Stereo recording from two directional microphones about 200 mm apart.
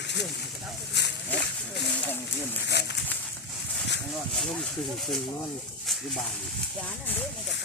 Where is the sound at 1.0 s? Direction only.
60° left (ahead or behind).